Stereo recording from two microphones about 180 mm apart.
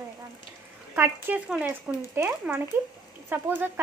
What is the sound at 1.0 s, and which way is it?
Speech, 10° right (ahead or behind).